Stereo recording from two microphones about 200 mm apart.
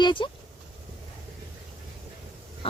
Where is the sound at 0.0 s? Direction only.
25° left (ahead or behind).